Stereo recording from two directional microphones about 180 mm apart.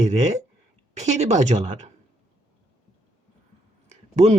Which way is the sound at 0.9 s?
40° right (ahead or behind).